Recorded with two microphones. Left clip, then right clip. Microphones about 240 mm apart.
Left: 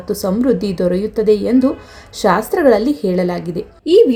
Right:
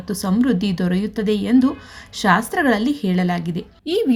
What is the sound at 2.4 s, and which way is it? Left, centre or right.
A woman's voice, right.